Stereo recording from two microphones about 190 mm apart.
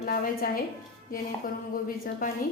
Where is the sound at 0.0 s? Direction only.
50° left (ahead or behind).